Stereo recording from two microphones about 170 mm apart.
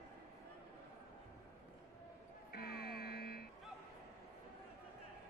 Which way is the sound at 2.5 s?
65° left (ahead or behind).